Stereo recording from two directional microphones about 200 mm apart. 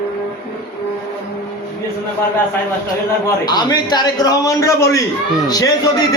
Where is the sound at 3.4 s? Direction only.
20° left (ahead or behind).